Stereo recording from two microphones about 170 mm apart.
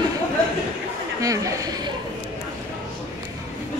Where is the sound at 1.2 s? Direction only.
20° right (ahead or behind).